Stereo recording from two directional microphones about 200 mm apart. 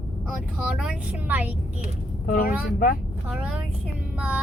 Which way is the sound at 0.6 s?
5° right (ahead or behind).